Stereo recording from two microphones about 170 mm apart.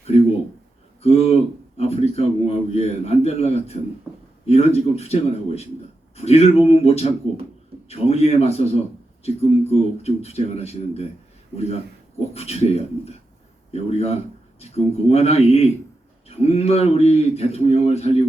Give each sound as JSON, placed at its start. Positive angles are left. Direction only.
{"t": 1.0, "sound": "a sound", "side_deg": 40}
{"t": 1.8, "sound": "a man's voice", "side_deg": 40}
{"t": 12.3, "sound": "a man's voice", "side_deg": 35}